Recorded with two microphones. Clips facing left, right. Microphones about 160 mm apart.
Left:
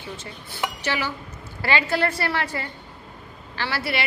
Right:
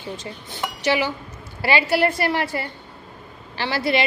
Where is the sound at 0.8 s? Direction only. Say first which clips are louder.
Right 9 dB; 15° right (ahead or behind).